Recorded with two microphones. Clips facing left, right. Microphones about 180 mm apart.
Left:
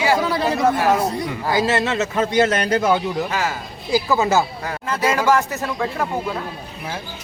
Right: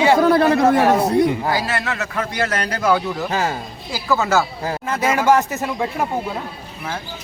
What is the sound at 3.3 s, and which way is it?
Speech, 30° right (ahead or behind).